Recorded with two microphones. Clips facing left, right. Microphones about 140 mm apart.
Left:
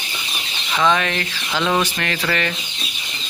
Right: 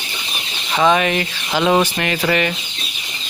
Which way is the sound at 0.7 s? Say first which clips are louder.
Right 3 dB; 20° right (ahead or behind).